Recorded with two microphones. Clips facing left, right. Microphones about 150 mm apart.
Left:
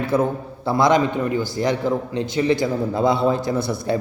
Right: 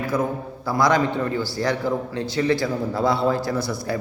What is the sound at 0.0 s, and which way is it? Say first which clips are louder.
A man's voice: left 3 dB; 25° left (ahead or behind).